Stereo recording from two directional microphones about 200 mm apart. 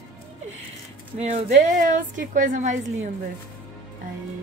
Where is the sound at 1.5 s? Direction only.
40° right (ahead or behind).